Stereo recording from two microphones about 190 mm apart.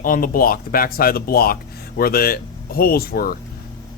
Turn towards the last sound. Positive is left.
turn(degrees=50)  # may be behind; listen again after turning